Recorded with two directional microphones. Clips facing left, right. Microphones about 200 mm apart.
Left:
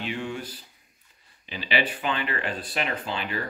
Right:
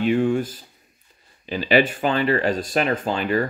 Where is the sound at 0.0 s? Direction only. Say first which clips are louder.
Right 12 dB; 50° right (ahead or behind).